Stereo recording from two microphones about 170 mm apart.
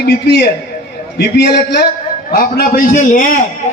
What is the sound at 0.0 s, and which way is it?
A man's voice, 70° left (ahead or behind).